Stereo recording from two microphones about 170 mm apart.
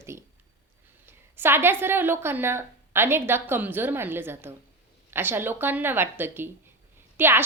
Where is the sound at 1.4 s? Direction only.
15° right (ahead or behind).